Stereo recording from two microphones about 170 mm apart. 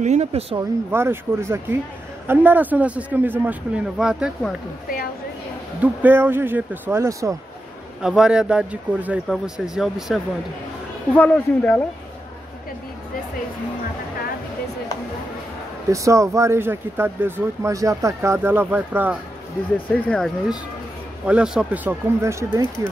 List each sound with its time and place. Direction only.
0.0 s speech: 40° right (ahead or behind)
0.6 s speech: 15° right (ahead or behind)
4.8 s a sound: 60° left (ahead or behind)
5.8 s speech: 10° right (ahead or behind)
8.0 s speech: 5° right (ahead or behind)
15.9 s speech: 20° right (ahead or behind)
19.9 s speech: 5° left (ahead or behind); by 22.8 s 15° right (ahead or behind)